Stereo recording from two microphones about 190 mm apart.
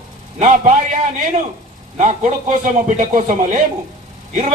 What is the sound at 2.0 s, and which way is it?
A man's voice, 40° right (ahead or behind).